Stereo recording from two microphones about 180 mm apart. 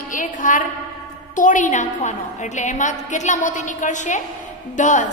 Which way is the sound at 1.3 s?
45° left (ahead or behind).